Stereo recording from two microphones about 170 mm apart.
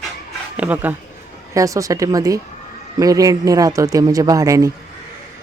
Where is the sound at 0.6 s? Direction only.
10° right (ahead or behind).